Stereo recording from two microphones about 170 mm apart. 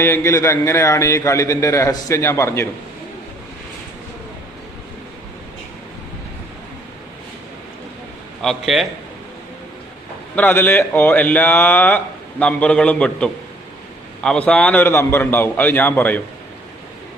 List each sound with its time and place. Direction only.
0.0 s a man's voice: 15° left (ahead or behind)
8.4 s a man's voice: centre (ahead or behind)
10.3 s a man's voice: 10° left (ahead or behind)